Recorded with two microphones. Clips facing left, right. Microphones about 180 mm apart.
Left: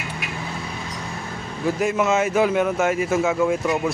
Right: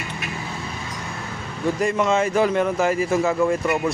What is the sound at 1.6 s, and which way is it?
A man's voice, 5° left (ahead or behind).